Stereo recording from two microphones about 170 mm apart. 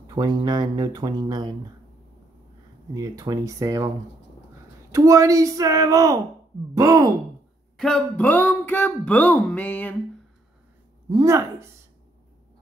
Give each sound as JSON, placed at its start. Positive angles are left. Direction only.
{"t": 0.0, "sound": "speech", "side_deg": -25}
{"t": 2.9, "sound": "speech", "side_deg": -20}
{"t": 4.9, "sound": "speech", "side_deg": -20}
{"t": 7.7, "sound": "speech", "side_deg": 5}
{"t": 11.1, "sound": "speech", "side_deg": -20}